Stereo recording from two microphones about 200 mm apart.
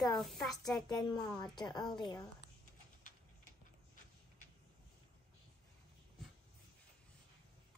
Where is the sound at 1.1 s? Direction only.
20° left (ahead or behind).